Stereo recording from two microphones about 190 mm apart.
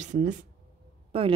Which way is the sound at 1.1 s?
30° right (ahead or behind).